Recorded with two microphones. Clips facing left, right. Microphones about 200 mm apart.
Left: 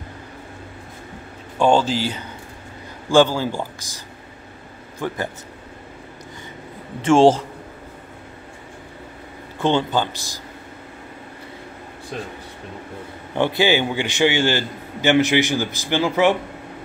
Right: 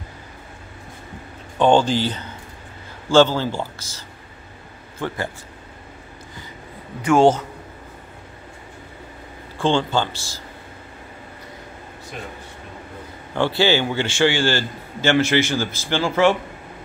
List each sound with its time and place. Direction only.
1.6 s a man's voice: 5° left (ahead or behind)
7.0 s a man's voice: 30° left (ahead or behind)
9.6 s a man's voice: 20° left (ahead or behind)
13.3 s a man's voice: 20° left (ahead or behind)